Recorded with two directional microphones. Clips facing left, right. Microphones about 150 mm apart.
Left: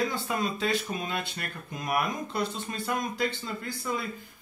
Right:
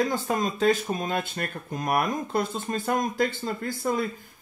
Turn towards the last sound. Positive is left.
turn(degrees=-45)  # may be behind; listen again after turning